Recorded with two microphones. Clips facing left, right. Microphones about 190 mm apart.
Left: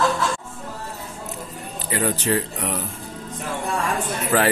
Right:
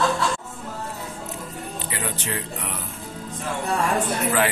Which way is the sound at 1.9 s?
40° left (ahead or behind).